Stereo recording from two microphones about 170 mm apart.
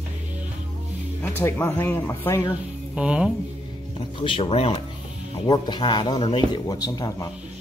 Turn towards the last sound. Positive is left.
turn(degrees=20)  # may be behind; listen again after turning